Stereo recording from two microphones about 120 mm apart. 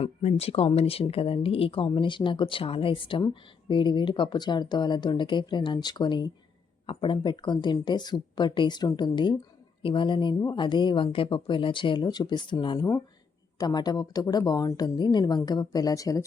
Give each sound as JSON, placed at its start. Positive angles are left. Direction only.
{"t": 0.0, "sound": "speech", "side_deg": 65}